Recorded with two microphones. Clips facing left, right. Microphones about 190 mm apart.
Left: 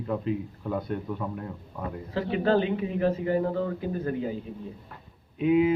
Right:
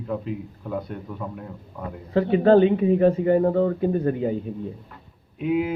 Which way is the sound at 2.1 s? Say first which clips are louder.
Right 8 dB; 55° right (ahead or behind).